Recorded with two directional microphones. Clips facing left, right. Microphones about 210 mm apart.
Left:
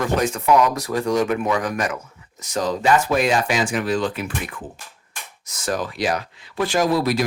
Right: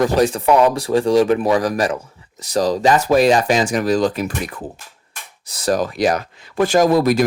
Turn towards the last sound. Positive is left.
turn(degrees=-45)  # may be behind; listen again after turning